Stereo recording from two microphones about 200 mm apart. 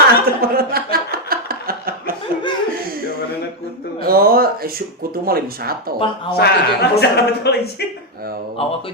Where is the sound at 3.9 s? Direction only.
50° right (ahead or behind).